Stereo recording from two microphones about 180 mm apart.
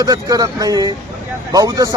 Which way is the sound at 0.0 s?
20° right (ahead or behind).